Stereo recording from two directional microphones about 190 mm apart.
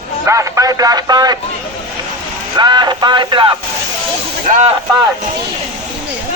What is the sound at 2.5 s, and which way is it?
A man's voice, 20° right (ahead or behind).